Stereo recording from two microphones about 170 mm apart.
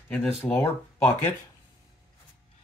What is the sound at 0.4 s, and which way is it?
Speech, 10° left (ahead or behind).